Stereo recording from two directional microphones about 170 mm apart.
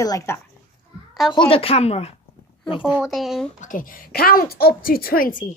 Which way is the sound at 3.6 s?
55° left (ahead or behind).